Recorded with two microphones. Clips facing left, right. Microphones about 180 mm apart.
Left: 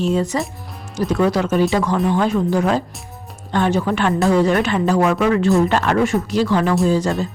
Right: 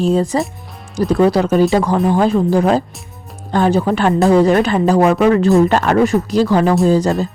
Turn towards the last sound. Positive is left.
turn(degrees=-40)  # may be behind; listen again after turning